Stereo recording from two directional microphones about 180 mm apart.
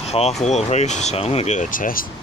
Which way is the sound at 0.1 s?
35° left (ahead or behind).